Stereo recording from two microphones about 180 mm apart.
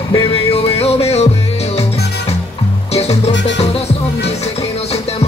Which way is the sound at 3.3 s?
80° left.